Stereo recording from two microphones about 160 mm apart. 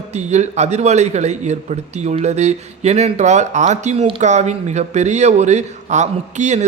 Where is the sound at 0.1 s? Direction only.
45° right (ahead or behind).